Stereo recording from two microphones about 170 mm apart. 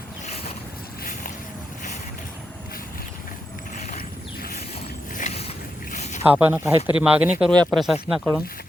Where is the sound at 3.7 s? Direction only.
50° left (ahead or behind).